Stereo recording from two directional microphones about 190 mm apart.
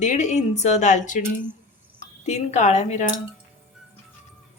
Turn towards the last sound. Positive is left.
turn(degrees=40)  # may be behind; listen again after turning